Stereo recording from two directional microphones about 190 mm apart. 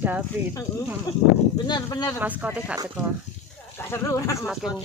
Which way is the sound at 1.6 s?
20° left (ahead or behind).